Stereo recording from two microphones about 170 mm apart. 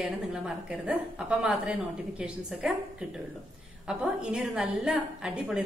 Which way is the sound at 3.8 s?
5° right (ahead or behind).